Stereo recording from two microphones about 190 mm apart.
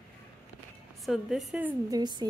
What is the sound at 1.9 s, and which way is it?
Speech, 20° right (ahead or behind).